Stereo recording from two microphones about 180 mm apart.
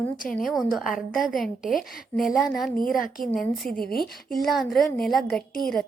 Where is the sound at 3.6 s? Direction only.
55° left (ahead or behind).